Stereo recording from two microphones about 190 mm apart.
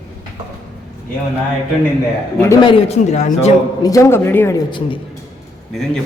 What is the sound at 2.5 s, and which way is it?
A man's voice, 25° left (ahead or behind).